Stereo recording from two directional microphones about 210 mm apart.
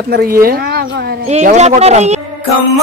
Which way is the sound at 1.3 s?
35° right (ahead or behind).